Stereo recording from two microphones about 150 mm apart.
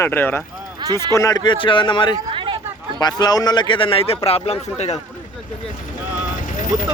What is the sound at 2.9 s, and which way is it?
A man's voice, 25° left (ahead or behind).